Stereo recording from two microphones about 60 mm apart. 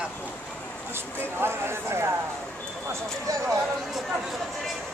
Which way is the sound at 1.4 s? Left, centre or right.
Right.